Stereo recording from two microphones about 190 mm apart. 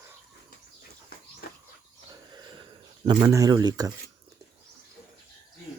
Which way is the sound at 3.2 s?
20° right (ahead or behind).